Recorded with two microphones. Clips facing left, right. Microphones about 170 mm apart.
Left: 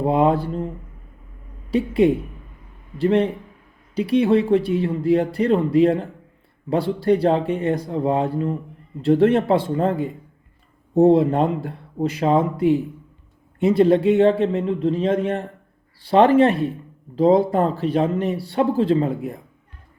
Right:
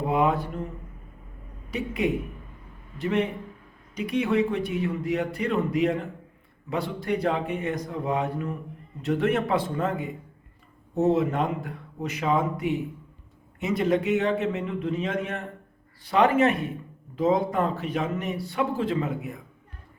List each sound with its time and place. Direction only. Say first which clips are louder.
0.0 s speech: left 6 dB; 30° left (ahead or behind)
1.7 s speech: left 9 dB; 30° left (ahead or behind)